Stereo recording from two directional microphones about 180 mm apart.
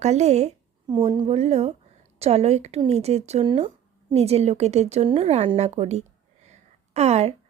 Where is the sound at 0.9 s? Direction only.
25° right (ahead or behind).